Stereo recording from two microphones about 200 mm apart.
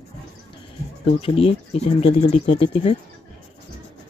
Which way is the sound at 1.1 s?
30° left (ahead or behind).